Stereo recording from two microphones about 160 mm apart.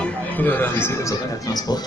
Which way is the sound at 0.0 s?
10° left (ahead or behind).